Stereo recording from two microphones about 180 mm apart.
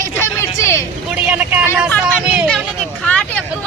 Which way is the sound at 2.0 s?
5° right (ahead or behind).